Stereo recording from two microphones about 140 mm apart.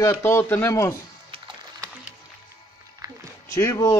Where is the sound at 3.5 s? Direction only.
25° left (ahead or behind).